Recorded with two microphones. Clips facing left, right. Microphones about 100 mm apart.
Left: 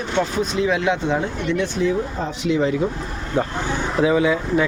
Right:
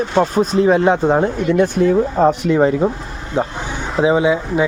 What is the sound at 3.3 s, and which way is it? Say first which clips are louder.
Speech: right 1 dB; 20° right (ahead or behind).